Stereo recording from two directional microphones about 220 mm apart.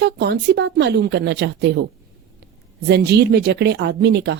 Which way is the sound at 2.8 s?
50° right (ahead or behind).